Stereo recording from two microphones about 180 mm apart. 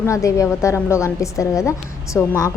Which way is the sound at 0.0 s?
15° left (ahead or behind).